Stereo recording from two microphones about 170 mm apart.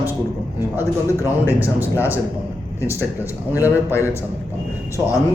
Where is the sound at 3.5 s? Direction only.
15° left (ahead or behind).